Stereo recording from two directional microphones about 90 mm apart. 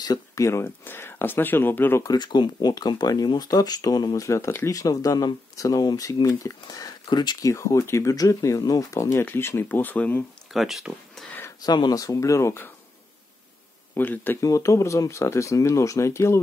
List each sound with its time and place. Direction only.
0.0 s a sound: 45° left (ahead or behind)
0.5 s speech: 30° left (ahead or behind)
2.0 s speech: 55° left (ahead or behind)
7.4 s speech: 35° left (ahead or behind); by 10.2 s 20° left (ahead or behind)
10.5 s speech: centre (ahead or behind)
11.6 s speech: 50° left (ahead or behind); by 12.7 s 30° left (ahead or behind)
13.9 s speech: 20° left (ahead or behind)
14.4 s speech: 35° left (ahead or behind)